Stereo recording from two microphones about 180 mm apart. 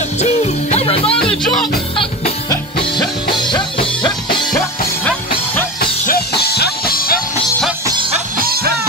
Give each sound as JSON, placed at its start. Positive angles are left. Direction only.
{"t": 0.2, "sound": "music", "side_deg": 35}
{"t": 1.2, "sound": "music", "side_deg": 5}
{"t": 3.3, "sound": "music", "side_deg": 25}
{"t": 5.0, "sound": "music", "side_deg": 10}
{"t": 5.8, "sound": "music", "side_deg": 60}
{"t": 8.4, "sound": "music", "side_deg": -55}